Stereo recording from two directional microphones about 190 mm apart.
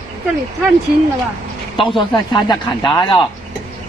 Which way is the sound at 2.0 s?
25° left (ahead or behind).